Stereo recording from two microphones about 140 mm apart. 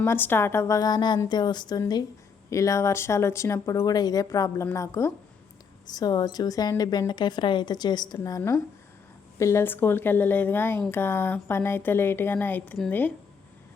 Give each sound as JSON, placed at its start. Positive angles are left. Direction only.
{"t": 0.0, "sound": "a woman's voice", "side_deg": 15}